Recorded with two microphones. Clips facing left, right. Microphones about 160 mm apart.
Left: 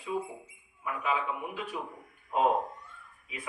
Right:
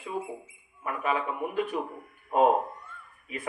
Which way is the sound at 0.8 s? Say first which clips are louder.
Right 3 dB; 50° right (ahead or behind).